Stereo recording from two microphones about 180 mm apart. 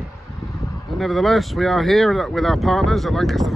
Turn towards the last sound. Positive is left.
turn(degrees=0)  # may be behind; listen again after turning